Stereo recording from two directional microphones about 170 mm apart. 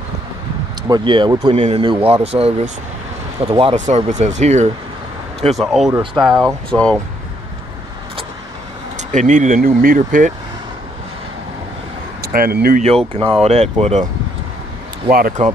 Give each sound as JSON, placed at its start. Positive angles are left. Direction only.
{"t": 0.8, "sound": "speech", "side_deg": -25}
{"t": 3.7, "sound": "speech", "side_deg": -45}
{"t": 5.6, "sound": "speech", "side_deg": 0}
{"t": 5.9, "sound": "speech", "side_deg": -25}
{"t": 6.4, "sound": "speech", "side_deg": 5}
{"t": 8.9, "sound": "speech", "side_deg": -45}
{"t": 12.2, "sound": "speech", "side_deg": -65}
{"t": 13.4, "sound": "speech", "side_deg": -40}
{"t": 15.0, "sound": "speech", "side_deg": -55}